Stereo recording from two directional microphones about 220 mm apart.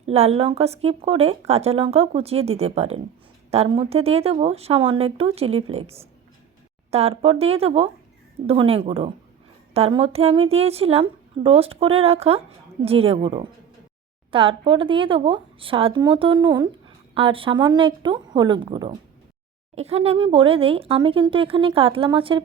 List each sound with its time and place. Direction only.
0.0 s speech: 30° right (ahead or behind)